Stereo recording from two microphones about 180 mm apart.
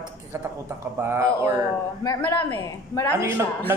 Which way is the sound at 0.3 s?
15° right (ahead or behind).